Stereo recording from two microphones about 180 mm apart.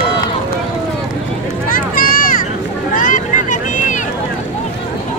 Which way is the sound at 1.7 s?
50° left (ahead or behind).